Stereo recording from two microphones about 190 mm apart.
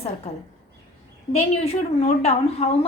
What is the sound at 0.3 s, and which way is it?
Speech, 30° left (ahead or behind).